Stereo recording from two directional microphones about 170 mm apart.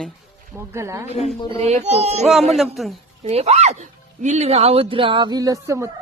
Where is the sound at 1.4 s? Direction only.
35° right (ahead or behind).